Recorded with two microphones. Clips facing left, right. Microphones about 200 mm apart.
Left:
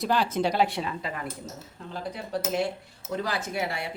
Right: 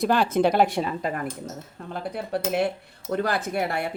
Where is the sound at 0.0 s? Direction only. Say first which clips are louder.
Right 5 dB; 55° right (ahead or behind).